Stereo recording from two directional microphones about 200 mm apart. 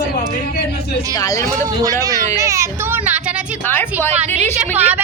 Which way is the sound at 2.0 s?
15° right (ahead or behind).